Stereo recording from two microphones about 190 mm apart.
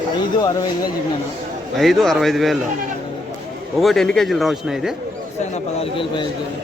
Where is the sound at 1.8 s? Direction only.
Centre (ahead or behind).